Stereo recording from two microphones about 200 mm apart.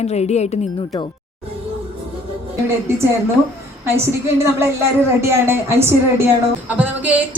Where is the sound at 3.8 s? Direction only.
15° right (ahead or behind).